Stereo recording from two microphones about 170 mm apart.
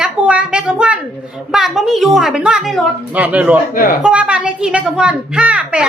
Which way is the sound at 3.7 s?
55° left (ahead or behind).